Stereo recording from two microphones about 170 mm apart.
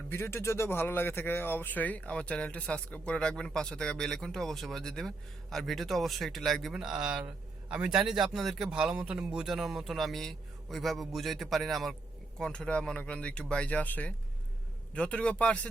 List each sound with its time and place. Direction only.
0.1 s speech: 15° left (ahead or behind)